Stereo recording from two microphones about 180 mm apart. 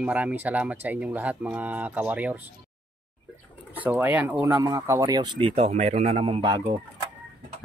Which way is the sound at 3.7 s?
10° right (ahead or behind).